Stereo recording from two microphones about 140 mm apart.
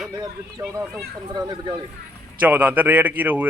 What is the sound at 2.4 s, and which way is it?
Speech, 10° right (ahead or behind).